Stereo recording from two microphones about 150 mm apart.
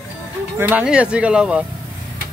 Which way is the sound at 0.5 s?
15° right (ahead or behind).